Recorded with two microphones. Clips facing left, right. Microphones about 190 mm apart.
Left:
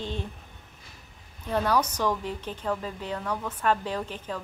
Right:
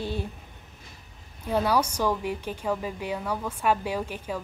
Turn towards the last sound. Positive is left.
turn(degrees=-10)  # may be behind; listen again after turning